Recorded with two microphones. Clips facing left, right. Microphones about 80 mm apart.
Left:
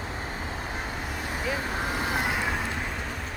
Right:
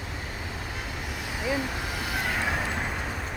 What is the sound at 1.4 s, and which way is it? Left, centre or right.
Vehicle, left.